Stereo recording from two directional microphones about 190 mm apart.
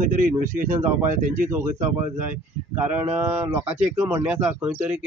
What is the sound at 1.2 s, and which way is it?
Speech, 45° right (ahead or behind).